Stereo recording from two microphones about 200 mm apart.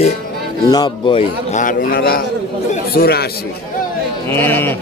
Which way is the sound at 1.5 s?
40° left (ahead or behind).